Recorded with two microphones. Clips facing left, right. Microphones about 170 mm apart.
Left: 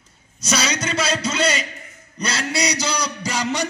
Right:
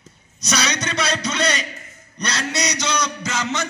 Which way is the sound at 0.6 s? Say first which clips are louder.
Even; 5° left (ahead or behind).